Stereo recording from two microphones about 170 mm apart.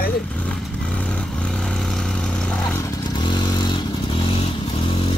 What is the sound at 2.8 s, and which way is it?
Vehicle, 25° left (ahead or behind).